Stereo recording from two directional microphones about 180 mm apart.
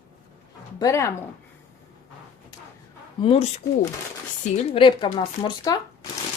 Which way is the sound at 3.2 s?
30° left (ahead or behind).